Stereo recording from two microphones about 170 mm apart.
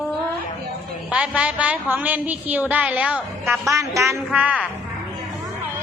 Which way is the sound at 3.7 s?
15° right (ahead or behind).